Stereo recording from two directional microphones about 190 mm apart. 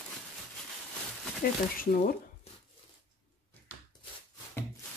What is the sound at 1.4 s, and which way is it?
Speech, 50° left (ahead or behind).